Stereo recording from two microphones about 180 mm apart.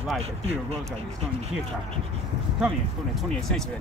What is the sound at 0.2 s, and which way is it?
Speech, 35° right (ahead or behind).